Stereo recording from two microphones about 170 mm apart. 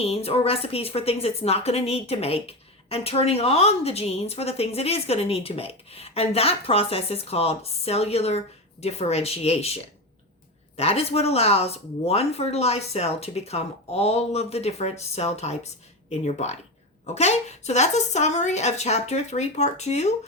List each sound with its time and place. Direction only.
0.0 s a woman's voice: 35° left (ahead or behind)